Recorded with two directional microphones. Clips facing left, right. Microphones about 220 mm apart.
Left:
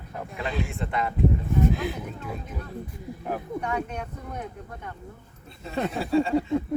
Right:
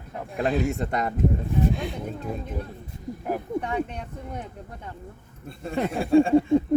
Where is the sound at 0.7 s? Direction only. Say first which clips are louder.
Right 3 dB; 40° right (ahead or behind).